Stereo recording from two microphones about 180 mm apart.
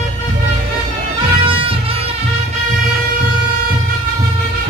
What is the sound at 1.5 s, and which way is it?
Music, 30° right (ahead or behind).